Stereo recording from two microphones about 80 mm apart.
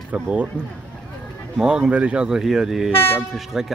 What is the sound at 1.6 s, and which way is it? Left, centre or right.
Speech, centre.